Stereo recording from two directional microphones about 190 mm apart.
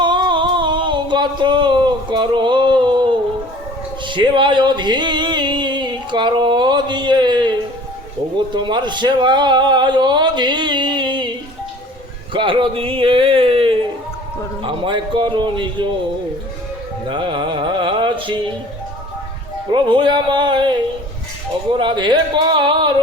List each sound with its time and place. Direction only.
0.0 s a sound: 25° right (ahead or behind)
8.4 s a man's voice: 25° right (ahead or behind)
17.1 s a man's voice: 25° right (ahead or behind)
19.7 s a man's voice: 25° right (ahead or behind)